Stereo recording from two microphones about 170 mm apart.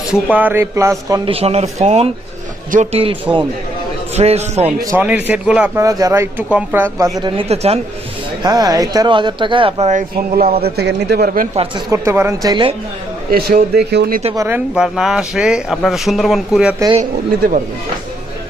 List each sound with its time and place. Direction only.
0.1 s speech: 10° right (ahead or behind)
1.2 s speech: 35° right (ahead or behind)
4.9 s speech: 10° right (ahead or behind)
5.8 s speech: 20° right (ahead or behind)
7.2 s speech: 30° right (ahead or behind)
8.4 s speech: 20° right (ahead or behind); by 10.6 s 40° right (ahead or behind)
10.6 s speech: 75° right (ahead or behind)
11.9 s speech: 15° right (ahead or behind)
13.3 s speech: 65° right (ahead or behind)
13.9 s speech: 75° right (ahead or behind)
14.3 s speech: 15° right (ahead or behind)